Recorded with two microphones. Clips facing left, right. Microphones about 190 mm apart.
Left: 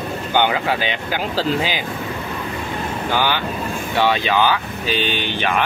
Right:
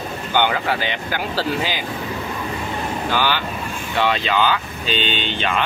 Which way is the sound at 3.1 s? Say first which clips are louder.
Left 2 dB; 15° left (ahead or behind).